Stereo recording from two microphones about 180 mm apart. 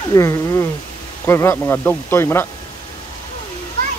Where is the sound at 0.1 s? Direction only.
15° left (ahead or behind).